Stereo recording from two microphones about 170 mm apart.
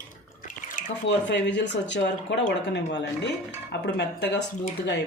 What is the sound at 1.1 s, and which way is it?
Speech, 90° left.